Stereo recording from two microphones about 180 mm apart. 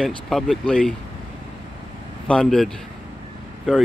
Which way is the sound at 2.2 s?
Centre (ahead or behind).